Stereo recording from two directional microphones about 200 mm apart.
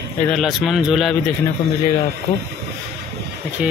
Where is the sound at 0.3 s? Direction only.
Centre (ahead or behind).